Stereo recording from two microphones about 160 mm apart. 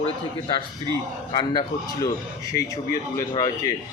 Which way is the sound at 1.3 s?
25° left (ahead or behind).